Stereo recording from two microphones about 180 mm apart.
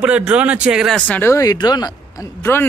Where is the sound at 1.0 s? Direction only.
10° left (ahead or behind).